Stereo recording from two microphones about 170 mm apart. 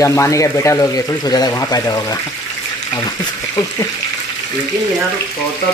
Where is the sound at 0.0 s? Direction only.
15° left (ahead or behind).